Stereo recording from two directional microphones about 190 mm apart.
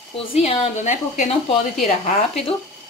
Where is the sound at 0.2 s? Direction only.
30° left (ahead or behind).